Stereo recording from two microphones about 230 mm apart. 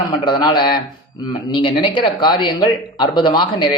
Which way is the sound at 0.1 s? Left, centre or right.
Left.